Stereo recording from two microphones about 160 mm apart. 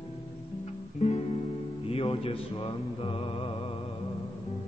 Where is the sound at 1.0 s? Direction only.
40° left (ahead or behind).